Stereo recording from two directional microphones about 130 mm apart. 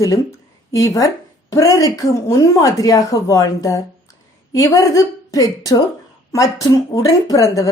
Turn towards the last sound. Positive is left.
turn(degrees=25)  # may be behind; listen again after turning